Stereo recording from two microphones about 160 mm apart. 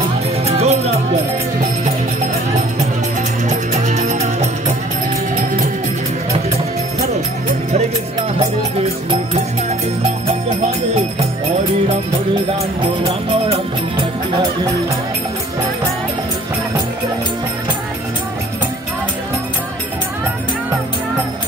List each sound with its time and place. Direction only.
0.5 s music: 40° right (ahead or behind)
3.4 s music: 45° right (ahead or behind)
9.1 s music: 35° right (ahead or behind)